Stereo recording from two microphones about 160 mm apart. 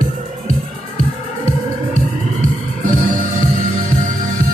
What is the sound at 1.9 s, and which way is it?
Music, 50° right (ahead or behind).